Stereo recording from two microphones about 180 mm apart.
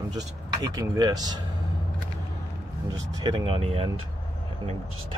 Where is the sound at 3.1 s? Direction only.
25° right (ahead or behind).